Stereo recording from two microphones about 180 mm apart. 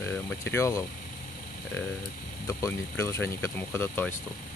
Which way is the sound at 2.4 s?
15° left (ahead or behind).